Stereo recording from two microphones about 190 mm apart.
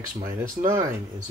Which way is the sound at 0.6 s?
15° right (ahead or behind).